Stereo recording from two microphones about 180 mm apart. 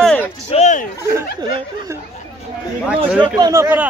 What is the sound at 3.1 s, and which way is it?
Speech, 5° right (ahead or behind).